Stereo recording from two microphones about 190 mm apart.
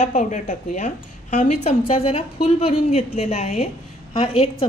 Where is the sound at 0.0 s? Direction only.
40° left (ahead or behind).